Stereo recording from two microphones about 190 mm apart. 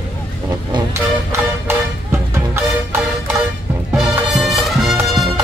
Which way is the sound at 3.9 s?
Centre (ahead or behind).